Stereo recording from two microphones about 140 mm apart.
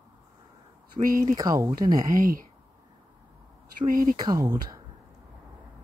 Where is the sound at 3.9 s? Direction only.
85° right.